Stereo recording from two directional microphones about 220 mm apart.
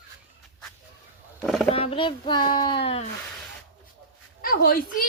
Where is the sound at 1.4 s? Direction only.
Centre (ahead or behind).